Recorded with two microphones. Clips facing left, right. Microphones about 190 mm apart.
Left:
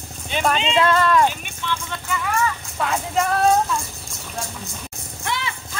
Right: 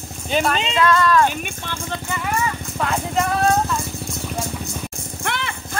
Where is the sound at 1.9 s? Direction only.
25° right (ahead or behind).